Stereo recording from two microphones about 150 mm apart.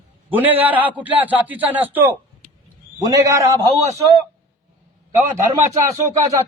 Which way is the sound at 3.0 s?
25° right (ahead or behind).